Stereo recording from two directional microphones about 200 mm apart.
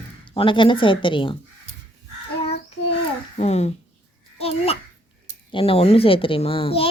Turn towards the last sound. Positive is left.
turn(degrees=25)  # may be behind; listen again after turning